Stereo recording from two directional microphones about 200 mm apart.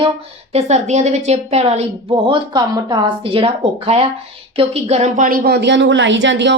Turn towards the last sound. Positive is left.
turn(degrees=-65)  # may be behind; listen again after turning